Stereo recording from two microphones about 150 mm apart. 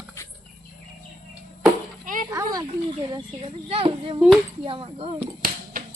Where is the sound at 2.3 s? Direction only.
25° right (ahead or behind).